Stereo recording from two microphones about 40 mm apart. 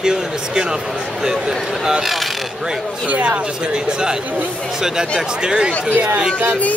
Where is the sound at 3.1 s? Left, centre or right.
Right.